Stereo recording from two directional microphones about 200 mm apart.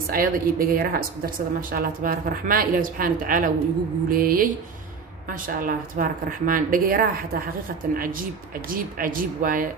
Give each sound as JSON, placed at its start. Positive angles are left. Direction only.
{"t": 0.1, "sound": "speech", "side_deg": -45}